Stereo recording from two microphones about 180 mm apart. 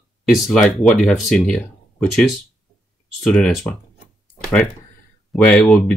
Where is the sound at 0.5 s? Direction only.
Centre (ahead or behind).